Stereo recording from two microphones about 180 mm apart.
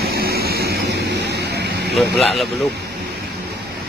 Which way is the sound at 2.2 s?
Centre (ahead or behind).